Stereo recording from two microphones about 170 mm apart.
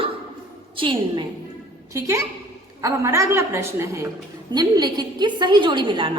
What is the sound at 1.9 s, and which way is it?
A woman's voice, 20° right (ahead or behind).